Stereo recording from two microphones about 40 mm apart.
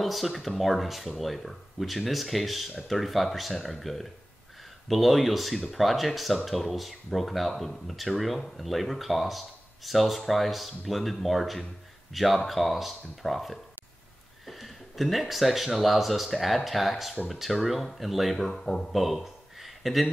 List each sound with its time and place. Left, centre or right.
0.0 s speech: centre